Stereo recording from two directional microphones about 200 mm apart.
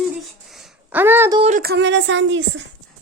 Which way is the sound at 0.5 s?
5° right (ahead or behind).